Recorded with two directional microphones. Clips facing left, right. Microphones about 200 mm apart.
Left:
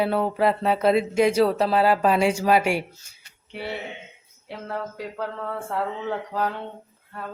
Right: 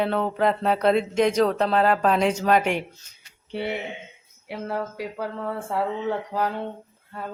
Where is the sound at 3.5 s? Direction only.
25° right (ahead or behind).